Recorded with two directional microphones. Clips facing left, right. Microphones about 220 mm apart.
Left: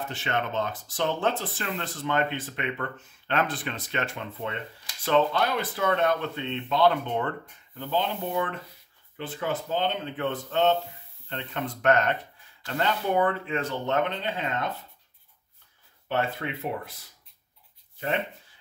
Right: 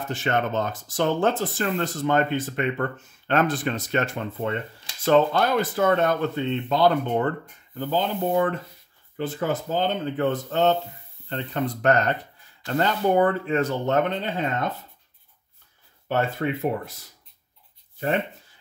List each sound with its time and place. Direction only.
0.1 s speech: 45° right (ahead or behind)
16.1 s speech: 45° right (ahead or behind)